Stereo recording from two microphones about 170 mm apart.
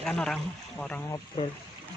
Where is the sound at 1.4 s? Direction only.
30° left (ahead or behind).